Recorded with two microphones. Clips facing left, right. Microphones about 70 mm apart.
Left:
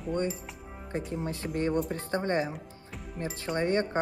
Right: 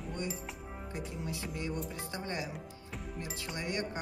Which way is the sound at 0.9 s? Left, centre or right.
Left.